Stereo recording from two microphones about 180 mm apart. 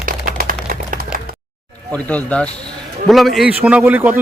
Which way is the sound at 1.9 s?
10° left (ahead or behind).